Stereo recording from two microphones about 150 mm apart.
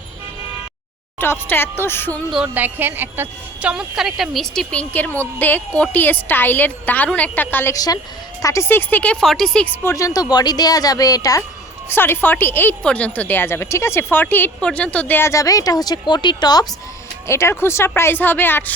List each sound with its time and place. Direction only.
1.2 s speech: 15° left (ahead or behind)
2.3 s a woman's voice: 10° right (ahead or behind)
9.8 s speech: 20° left (ahead or behind)